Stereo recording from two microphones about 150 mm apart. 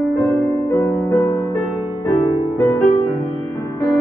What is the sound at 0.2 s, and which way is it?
Music, 10° left (ahead or behind).